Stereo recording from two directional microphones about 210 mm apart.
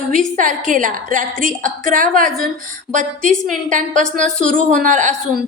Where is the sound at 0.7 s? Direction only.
40° right (ahead or behind).